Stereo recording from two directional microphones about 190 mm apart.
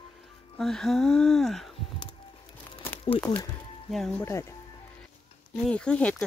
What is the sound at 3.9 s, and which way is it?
Speech, 5° left (ahead or behind).